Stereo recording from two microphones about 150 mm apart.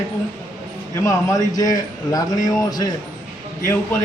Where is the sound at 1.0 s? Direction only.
25° left (ahead or behind).